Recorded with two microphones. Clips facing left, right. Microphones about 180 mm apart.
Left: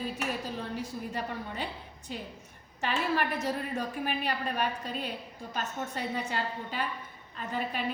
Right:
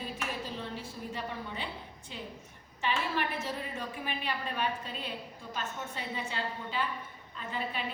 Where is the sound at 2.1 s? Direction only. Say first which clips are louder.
Left 4 dB; 45° left (ahead or behind).